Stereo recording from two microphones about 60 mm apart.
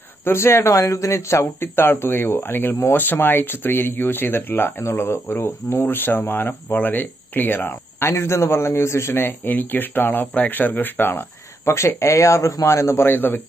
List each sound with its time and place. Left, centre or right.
0.2 s speech: left
0.7 s speech: left
5.7 s speech: left
8.1 s speech: left
11.6 s a man's voice: left
13.0 s speech: left